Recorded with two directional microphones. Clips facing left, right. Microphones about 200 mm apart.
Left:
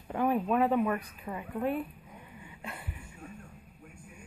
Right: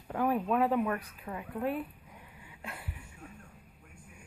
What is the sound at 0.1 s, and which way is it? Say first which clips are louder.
Speech: left 1 dB; centre (ahead or behind).